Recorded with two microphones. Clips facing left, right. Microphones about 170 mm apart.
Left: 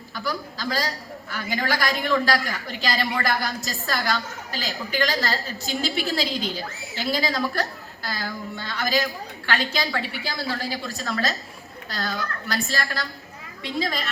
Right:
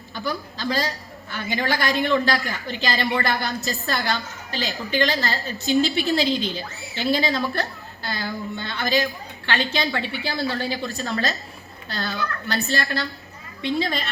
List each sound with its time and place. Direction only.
0.1 s a man's voice: 25° right (ahead or behind)